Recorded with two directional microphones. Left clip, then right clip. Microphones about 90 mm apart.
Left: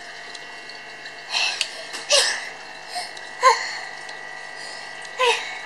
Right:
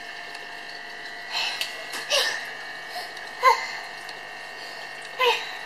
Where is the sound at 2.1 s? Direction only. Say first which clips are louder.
Left 5 dB; 40° left (ahead or behind).